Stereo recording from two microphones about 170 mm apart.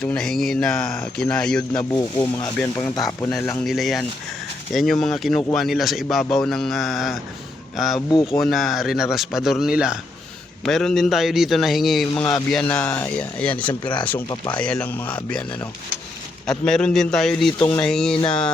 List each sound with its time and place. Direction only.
0.0 s speech: 5° left (ahead or behind)
2.7 s speech: 20° left (ahead or behind)
3.6 s speech: centre (ahead or behind)
8.1 s speech: 25° left (ahead or behind)
8.4 s speech: centre (ahead or behind)
12.1 s speech: 25° left (ahead or behind)
12.5 s speech: 5° left (ahead or behind)
14.3 s speech: 25° left (ahead or behind)
14.6 s speech: 5° left (ahead or behind)
16.5 s speech: 5° left (ahead or behind)
17.6 s speech: 15° left (ahead or behind)
17.8 s speech: 5° left (ahead or behind)